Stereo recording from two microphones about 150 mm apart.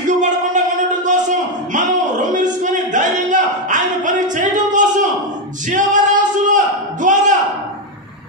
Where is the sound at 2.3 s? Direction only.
60° right (ahead or behind).